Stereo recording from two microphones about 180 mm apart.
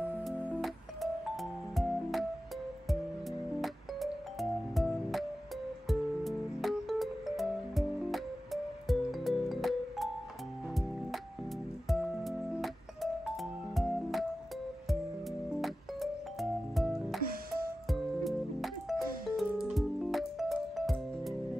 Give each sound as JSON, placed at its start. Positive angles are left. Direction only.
{"t": 0.0, "sound": "music", "side_deg": -10}
{"t": 15.5, "sound": "music", "side_deg": 0}
{"t": 17.2, "sound": "music", "side_deg": -55}
{"t": 17.8, "sound": "music", "side_deg": 0}